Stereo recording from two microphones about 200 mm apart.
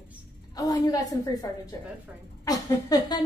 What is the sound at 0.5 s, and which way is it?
Speech, 15° left (ahead or behind).